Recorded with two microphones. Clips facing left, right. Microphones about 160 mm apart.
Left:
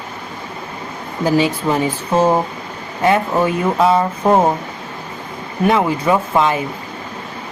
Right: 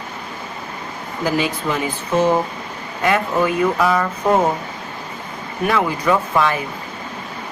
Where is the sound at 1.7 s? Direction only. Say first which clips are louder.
Left 4 dB; 25° left (ahead or behind).